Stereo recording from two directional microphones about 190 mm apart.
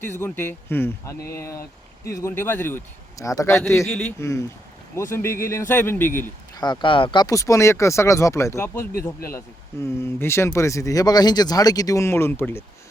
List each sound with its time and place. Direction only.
0.2 s speech: 10° left (ahead or behind)
6.5 s speech: 20° left (ahead or behind)
10.0 s speech: 15° left (ahead or behind)